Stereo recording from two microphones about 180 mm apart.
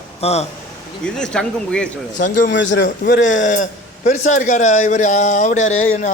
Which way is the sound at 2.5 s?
90° left.